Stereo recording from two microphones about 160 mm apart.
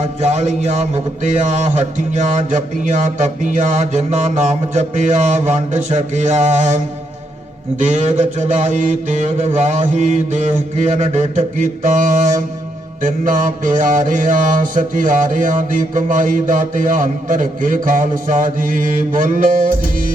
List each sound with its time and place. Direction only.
0.2 s a man's voice: 45° right (ahead or behind)
7.8 s a man's voice: 50° right (ahead or behind)
13.0 s mantra: 55° right (ahead or behind)